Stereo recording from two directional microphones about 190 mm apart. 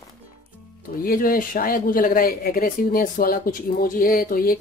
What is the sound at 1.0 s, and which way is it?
Speech, 50° left (ahead or behind).